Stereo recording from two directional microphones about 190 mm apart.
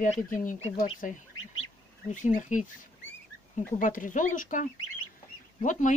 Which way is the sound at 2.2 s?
40° left (ahead or behind).